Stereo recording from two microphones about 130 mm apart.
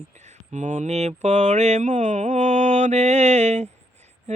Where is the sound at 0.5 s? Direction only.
70° right (ahead or behind).